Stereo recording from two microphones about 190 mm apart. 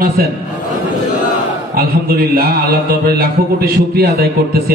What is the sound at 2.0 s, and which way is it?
Mantra, 55° right (ahead or behind).